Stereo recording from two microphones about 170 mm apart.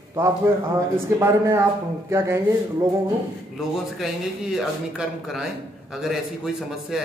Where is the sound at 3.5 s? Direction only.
Centre (ahead or behind).